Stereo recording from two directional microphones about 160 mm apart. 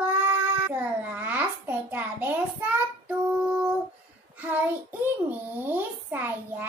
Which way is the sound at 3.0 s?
10° right (ahead or behind).